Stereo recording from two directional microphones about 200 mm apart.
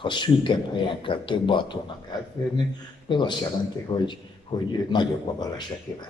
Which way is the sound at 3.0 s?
20° left (ahead or behind).